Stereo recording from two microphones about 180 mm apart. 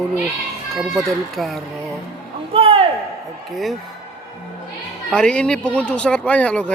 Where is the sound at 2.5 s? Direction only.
30° right (ahead or behind).